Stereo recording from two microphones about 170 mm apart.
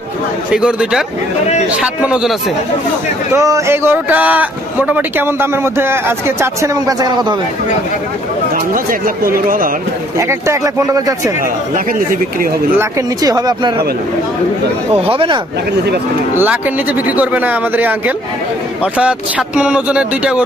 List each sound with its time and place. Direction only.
0.5 s speech: 5° right (ahead or behind)
3.3 s a man's voice: 15° right (ahead or behind)
8.7 s speech: 55° right (ahead or behind)
10.2 s speech: 15° right (ahead or behind)
11.9 s speech: 55° right (ahead or behind)
12.8 s speech: 20° right (ahead or behind)
14.9 s speech: 35° right (ahead or behind)
16.3 s a man's voice: 10° right (ahead or behind)